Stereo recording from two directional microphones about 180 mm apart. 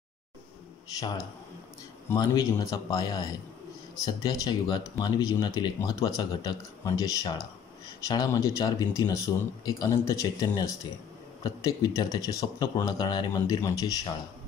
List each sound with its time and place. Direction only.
0.9 s speech: 20° left (ahead or behind)